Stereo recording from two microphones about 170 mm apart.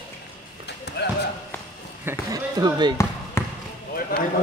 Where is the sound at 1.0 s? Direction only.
80° left.